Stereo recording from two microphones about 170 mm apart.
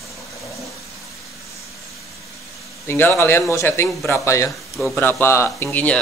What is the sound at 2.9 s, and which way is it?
Speech, 10° left (ahead or behind).